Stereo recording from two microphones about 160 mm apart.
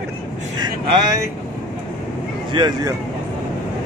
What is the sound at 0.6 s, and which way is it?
Vehicle, 25° right (ahead or behind).